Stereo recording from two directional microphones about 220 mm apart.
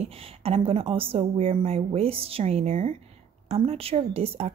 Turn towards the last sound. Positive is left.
turn(degrees=-30)  # may be behind; listen again after turning